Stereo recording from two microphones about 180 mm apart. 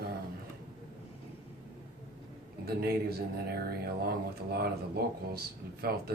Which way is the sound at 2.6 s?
60° right (ahead or behind).